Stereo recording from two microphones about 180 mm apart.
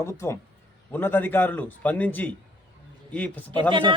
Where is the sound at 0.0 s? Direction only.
15° left (ahead or behind).